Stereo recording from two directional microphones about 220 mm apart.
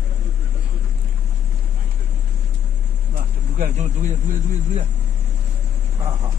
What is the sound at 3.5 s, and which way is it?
Speech, 35° right (ahead or behind).